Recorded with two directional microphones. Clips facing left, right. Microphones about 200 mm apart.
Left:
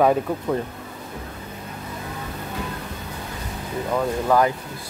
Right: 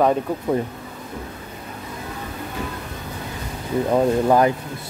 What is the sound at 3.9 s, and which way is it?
Speech, 25° right (ahead or behind).